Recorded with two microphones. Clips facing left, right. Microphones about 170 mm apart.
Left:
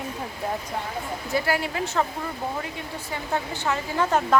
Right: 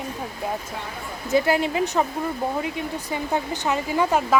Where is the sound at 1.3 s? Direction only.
20° right (ahead or behind).